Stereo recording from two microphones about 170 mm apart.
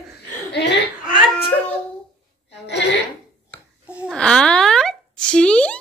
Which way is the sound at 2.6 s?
90° left.